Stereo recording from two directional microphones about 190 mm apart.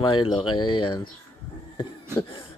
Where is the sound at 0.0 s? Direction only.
25° left (ahead or behind).